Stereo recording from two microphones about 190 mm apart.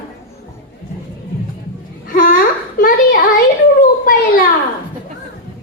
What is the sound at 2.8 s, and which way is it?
Speech, 50° left (ahead or behind).